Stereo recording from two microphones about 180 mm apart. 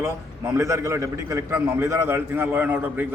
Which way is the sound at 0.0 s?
15° right (ahead or behind).